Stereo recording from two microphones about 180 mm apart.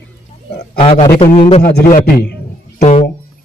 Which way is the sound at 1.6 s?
60° left (ahead or behind).